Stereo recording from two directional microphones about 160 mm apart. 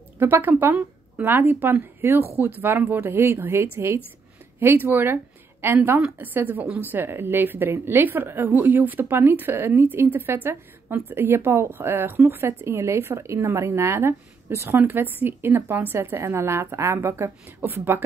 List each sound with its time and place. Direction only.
0.2 s a woman's voice: 15° right (ahead or behind)